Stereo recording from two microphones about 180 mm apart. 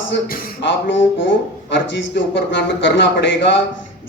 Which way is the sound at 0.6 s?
90° left.